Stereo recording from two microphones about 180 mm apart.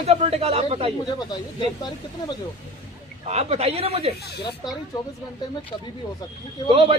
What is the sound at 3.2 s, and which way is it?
Speech, 35° right (ahead or behind).